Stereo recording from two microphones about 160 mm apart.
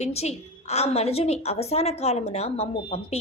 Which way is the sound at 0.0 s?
40° left (ahead or behind).